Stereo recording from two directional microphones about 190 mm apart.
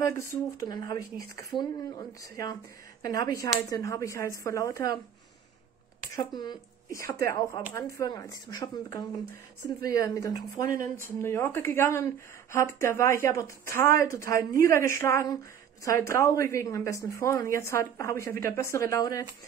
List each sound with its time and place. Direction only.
0.0 s speech: 15° left (ahead or behind)
3.0 s speech: 20° left (ahead or behind)
6.1 s speech: 20° left (ahead or behind)